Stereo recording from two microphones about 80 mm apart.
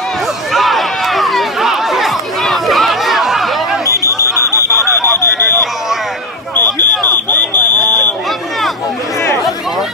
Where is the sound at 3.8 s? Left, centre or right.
Left.